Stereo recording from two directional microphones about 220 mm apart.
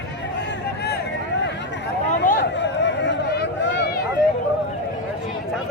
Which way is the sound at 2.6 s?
55° left (ahead or behind).